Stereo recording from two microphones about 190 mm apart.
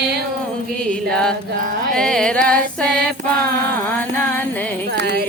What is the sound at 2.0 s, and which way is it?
Music, 5° left (ahead or behind).